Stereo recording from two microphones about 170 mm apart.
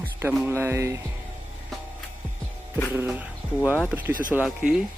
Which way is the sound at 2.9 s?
10° right (ahead or behind).